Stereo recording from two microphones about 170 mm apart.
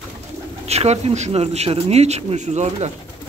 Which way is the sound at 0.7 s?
40° right (ahead or behind).